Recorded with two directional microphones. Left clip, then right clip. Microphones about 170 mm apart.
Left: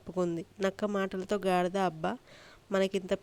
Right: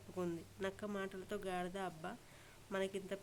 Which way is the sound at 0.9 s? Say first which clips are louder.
Left 12 dB; 45° left (ahead or behind).